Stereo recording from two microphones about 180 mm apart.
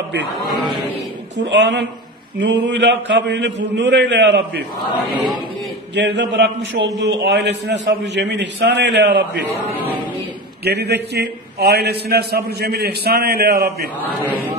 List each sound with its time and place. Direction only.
1.5 s a man's voice: 80° right
5.9 s a man's voice: 75° right (ahead or behind)
10.6 s a man's voice: 65° right (ahead or behind)